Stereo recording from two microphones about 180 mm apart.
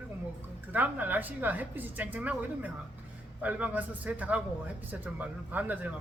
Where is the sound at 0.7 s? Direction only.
10° right (ahead or behind).